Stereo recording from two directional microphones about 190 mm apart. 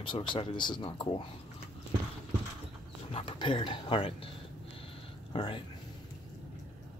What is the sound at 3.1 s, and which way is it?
Speech, 30° left (ahead or behind).